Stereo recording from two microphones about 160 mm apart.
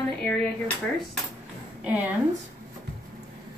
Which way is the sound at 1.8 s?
10° right (ahead or behind).